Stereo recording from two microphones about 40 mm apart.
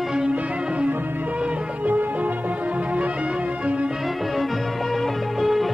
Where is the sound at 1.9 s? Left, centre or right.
Right.